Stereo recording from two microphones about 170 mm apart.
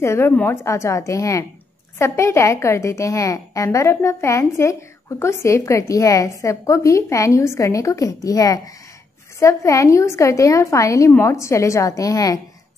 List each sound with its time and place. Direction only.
0.0 s a woman's voice: 15° left (ahead or behind)